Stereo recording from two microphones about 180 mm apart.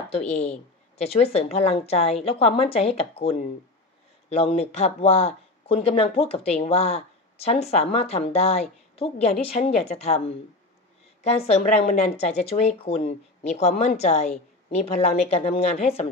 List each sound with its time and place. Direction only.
0.1 s a woman's voice: 40° left (ahead or behind)